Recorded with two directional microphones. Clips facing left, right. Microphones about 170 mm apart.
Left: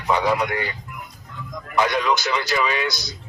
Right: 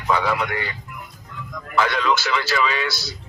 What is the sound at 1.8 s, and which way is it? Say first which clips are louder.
A man's voice: even; 15° left (ahead or behind).